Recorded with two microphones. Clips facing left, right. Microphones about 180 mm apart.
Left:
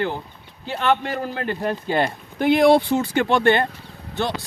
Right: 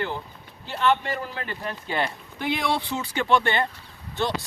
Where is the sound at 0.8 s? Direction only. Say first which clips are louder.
Left 2 dB; 50° left (ahead or behind).